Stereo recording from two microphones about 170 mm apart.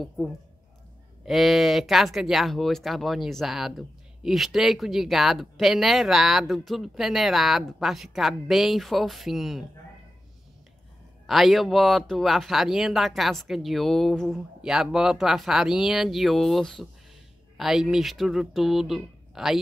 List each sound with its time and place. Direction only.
0.2 s speech: 5° left (ahead or behind)
11.2 s speech: centre (ahead or behind)